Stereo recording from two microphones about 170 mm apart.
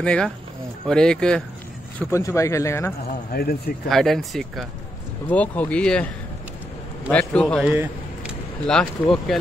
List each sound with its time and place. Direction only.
0.0 s speech: 5° left (ahead or behind)
2.0 s speech: 15° left (ahead or behind)
3.3 s speech: 65° left (ahead or behind)
3.9 s speech: centre (ahead or behind)
7.1 s speech: 5° left (ahead or behind)
7.6 s a sound: 10° right (ahead or behind)
8.6 s speech: 5° left (ahead or behind)